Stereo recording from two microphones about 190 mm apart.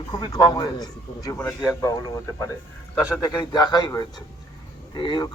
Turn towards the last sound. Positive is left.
turn(degrees=25)  # may be behind; listen again after turning